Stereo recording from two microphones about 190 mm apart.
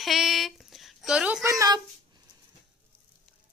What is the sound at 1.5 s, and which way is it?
Speech, 15° right (ahead or behind).